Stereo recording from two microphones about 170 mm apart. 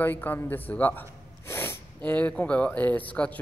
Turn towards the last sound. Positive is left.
turn(degrees=10)  # may be behind; listen again after turning